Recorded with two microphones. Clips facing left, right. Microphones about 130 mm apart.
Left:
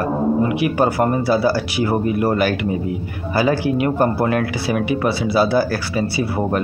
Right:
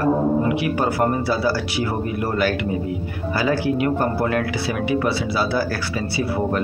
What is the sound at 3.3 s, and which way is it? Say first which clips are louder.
Speech: left 3 dB; 15° left (ahead or behind).